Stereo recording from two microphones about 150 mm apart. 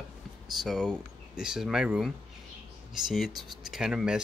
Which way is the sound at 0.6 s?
Centre (ahead or behind).